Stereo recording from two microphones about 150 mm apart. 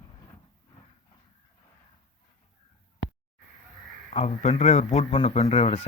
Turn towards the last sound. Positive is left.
turn(degrees=45)  # may be behind; listen again after turning